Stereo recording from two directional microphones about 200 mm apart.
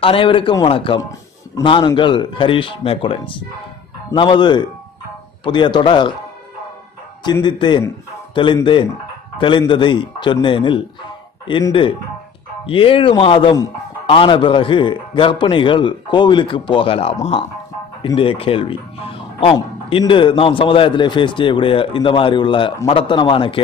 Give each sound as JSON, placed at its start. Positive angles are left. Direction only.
{"t": 0.0, "sound": "a man's voice", "side_deg": 25}
{"t": 7.2, "sound": "a man's voice", "side_deg": 20}
{"t": 9.4, "sound": "a man's voice", "side_deg": 25}